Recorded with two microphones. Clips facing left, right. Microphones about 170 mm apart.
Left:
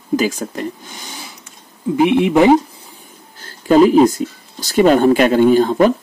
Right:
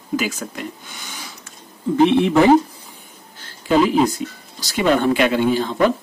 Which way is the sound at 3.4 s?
45° left (ahead or behind).